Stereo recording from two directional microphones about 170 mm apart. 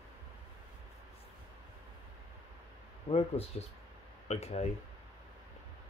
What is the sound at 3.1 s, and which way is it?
Speech, 35° left (ahead or behind).